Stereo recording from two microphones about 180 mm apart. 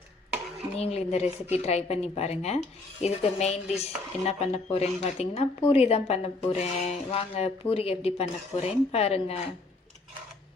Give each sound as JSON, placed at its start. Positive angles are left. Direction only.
{"t": 0.8, "sound": "speech", "side_deg": 35}